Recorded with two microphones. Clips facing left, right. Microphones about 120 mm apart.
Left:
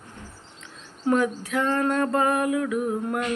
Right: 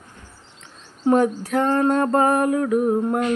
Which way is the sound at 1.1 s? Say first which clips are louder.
Right 5 dB; 40° right (ahead or behind).